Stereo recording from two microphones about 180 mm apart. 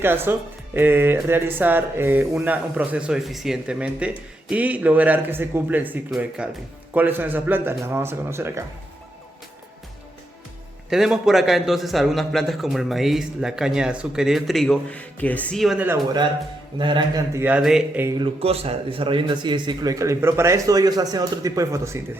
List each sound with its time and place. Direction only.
0.0 s speech: 10° right (ahead or behind)
10.8 s a man's voice: centre (ahead or behind)
16.7 s a man's voice: 25° right (ahead or behind)
17.3 s a man's voice: 10° right (ahead or behind)
18.2 s a man's voice: 35° right (ahead or behind); by 22.0 s 15° right (ahead or behind)